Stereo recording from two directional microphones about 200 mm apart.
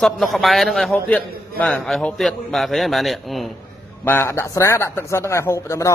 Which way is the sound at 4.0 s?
10° left (ahead or behind).